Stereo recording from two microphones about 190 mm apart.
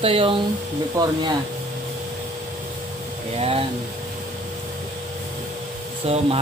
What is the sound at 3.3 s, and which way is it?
Speech, 30° right (ahead or behind).